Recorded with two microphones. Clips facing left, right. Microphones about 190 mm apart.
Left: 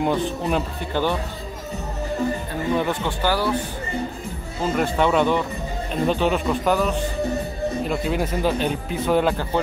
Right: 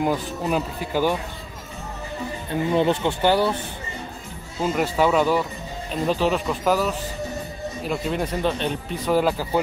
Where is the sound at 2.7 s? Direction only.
20° right (ahead or behind).